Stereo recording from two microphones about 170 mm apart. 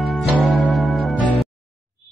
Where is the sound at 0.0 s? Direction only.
Centre (ahead or behind).